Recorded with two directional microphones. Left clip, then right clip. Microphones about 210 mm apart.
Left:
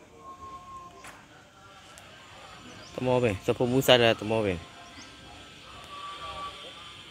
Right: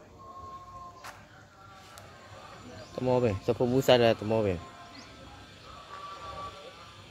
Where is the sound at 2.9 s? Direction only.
5° left (ahead or behind).